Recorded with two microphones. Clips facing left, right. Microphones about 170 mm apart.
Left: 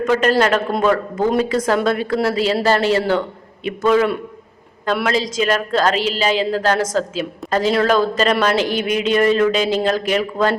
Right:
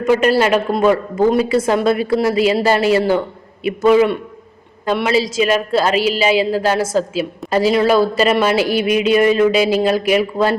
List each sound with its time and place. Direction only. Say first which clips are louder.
0.0 s a woman's voice: right 2 dB; 10° right (ahead or behind)